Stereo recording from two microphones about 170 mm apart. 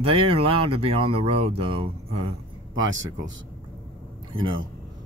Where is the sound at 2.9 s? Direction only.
90° right.